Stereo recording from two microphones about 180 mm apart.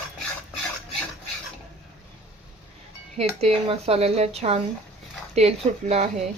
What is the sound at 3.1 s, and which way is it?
Speech, 35° right (ahead or behind).